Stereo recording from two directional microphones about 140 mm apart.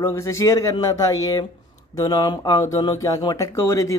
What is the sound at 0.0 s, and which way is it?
Speech, 20° left (ahead or behind).